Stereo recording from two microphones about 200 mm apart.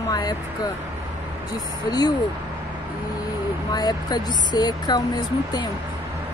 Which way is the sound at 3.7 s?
20° left (ahead or behind).